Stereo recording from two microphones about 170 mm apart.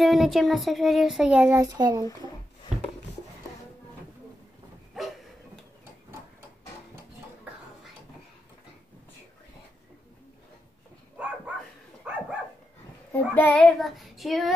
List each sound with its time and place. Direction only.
0.0 s child singing: centre (ahead or behind)
1.8 s speech: 25° right (ahead or behind)
5.0 s a sound: centre (ahead or behind)
11.2 s dog: 10° right (ahead or behind)
13.3 s child singing: 10° left (ahead or behind)